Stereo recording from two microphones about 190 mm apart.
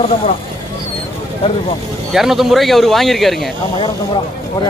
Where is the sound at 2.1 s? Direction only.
Centre (ahead or behind).